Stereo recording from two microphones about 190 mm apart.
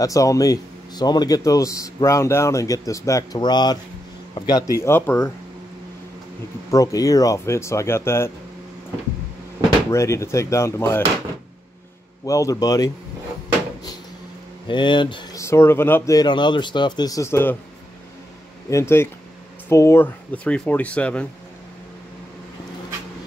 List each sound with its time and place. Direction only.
0.0 s speech: 15° left (ahead or behind)
6.7 s speech: 20° left (ahead or behind)
9.8 s speech: 15° left (ahead or behind)
12.3 s speech: 15° left (ahead or behind)
14.7 s speech: 25° left (ahead or behind)
18.7 s speech: 15° left (ahead or behind)